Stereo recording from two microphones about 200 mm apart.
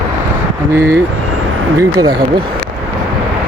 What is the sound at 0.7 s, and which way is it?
Speech, 15° right (ahead or behind).